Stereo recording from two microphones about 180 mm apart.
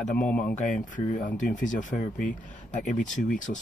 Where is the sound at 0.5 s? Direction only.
45° left (ahead or behind).